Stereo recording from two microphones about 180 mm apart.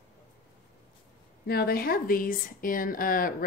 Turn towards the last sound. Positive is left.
turn(degrees=50)  # may be behind; listen again after turning